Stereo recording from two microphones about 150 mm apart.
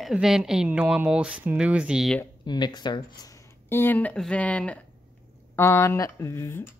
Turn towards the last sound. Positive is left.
turn(degrees=15)  # may be behind; listen again after turning